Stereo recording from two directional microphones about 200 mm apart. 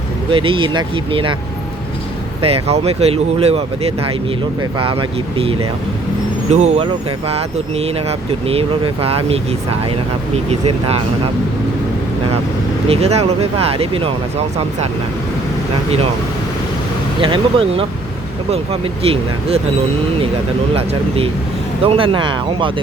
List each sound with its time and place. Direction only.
0.3 s speech: 25° right (ahead or behind)
2.4 s speech: 30° right (ahead or behind)
12.9 s speech: 30° right (ahead or behind)
17.2 s speech: 25° right (ahead or behind)
21.8 s speech: 25° right (ahead or behind)